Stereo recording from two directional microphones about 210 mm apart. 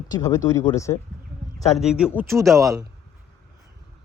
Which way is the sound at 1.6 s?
Centre (ahead or behind).